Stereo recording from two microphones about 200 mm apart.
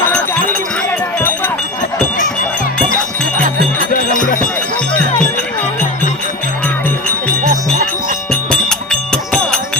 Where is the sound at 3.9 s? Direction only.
40° left (ahead or behind).